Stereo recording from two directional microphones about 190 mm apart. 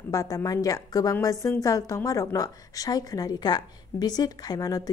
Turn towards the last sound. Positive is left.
turn(degrees=20)  # may be behind; listen again after turning